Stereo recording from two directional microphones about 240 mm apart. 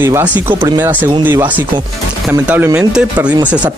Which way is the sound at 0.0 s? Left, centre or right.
Centre.